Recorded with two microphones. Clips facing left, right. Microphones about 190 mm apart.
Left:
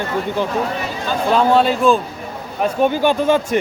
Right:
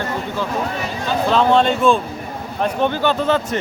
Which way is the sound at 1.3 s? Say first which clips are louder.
Left 1 dB; 5° left (ahead or behind).